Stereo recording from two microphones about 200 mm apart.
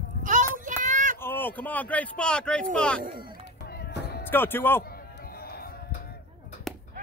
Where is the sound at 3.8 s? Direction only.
55° left (ahead or behind).